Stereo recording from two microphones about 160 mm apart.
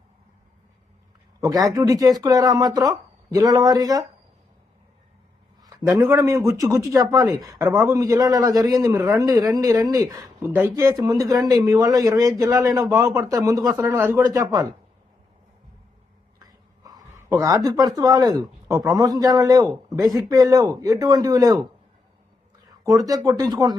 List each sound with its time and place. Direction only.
1.4 s speech: 20° right (ahead or behind)
6.0 s speech: 20° right (ahead or behind)
10.4 s speech: 10° right (ahead or behind)
16.4 s a sound: 25° right (ahead or behind)
17.4 s speech: 20° right (ahead or behind)
22.8 s speech: 20° right (ahead or behind)